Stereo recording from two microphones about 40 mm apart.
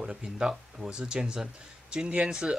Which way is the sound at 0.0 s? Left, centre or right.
Centre.